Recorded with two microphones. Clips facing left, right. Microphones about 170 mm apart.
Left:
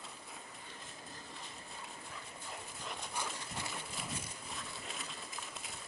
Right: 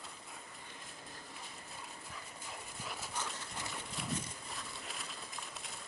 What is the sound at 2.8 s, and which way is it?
Dog, 5° right (ahead or behind).